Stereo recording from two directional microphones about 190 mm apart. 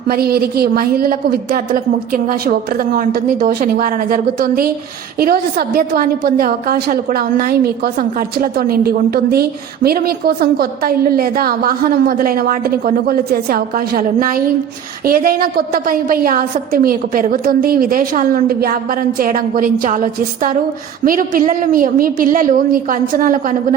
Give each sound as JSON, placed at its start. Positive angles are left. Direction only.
{"t": 0.1, "sound": "a woman's voice", "side_deg": -55}